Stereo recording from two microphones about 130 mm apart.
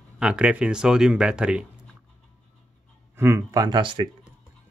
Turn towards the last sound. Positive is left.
turn(degrees=-35)  # may be behind; listen again after turning